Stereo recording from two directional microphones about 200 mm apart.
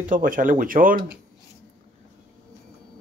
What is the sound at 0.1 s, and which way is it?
Speech, 40° right (ahead or behind).